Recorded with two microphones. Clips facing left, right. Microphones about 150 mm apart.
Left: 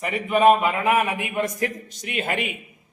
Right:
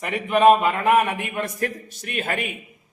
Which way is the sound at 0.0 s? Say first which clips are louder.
Right 1 dB; centre (ahead or behind).